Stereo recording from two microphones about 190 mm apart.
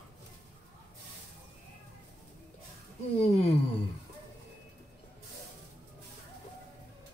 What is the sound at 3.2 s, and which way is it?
Speech, 35° left (ahead or behind).